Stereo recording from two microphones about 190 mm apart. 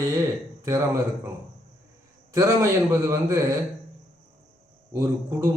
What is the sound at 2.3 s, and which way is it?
A man's voice, 15° right (ahead or behind).